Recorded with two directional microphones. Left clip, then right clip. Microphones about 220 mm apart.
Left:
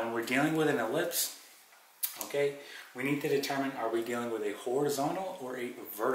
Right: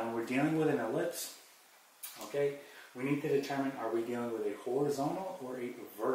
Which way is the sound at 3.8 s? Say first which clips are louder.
Left 3 dB; 20° right (ahead or behind).